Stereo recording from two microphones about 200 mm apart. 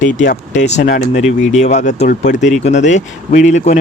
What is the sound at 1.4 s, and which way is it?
Speech, 35° left (ahead or behind).